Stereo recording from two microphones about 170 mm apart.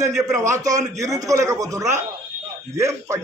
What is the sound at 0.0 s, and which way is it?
A man's voice, 20° right (ahead or behind).